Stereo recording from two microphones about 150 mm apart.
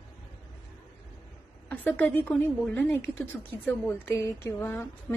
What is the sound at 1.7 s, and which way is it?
A woman's voice, 15° left (ahead or behind).